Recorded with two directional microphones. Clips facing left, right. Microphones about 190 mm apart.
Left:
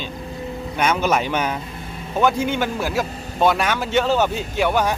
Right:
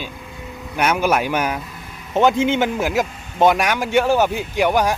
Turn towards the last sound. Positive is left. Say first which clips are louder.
# right 2 dB
turn(degrees=-10)  # may be behind; listen again after turning